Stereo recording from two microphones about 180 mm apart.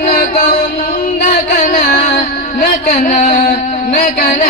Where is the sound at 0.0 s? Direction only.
45° left (ahead or behind).